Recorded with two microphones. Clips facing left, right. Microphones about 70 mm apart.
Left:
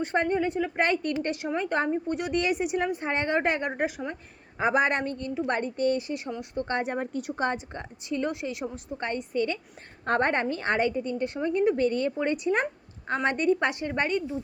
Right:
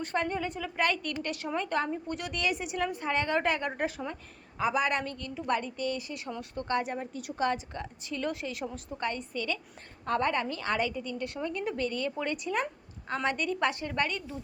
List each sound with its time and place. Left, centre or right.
0.0 s a woman's voice: left
3.8 s a woman's voice: centre
4.1 s a woman's voice: left
5.5 s a woman's voice: left; by 6.7 s centre
6.7 s a woman's voice: left
6.9 s a woman's voice: left
7.2 s a woman's voice: left
10.1 s a woman's voice: left